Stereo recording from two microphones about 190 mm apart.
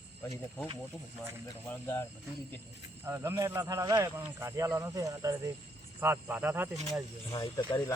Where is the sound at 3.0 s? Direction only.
15° right (ahead or behind).